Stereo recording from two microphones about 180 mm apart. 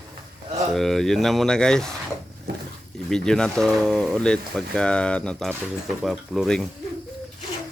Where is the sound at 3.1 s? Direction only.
5° left (ahead or behind).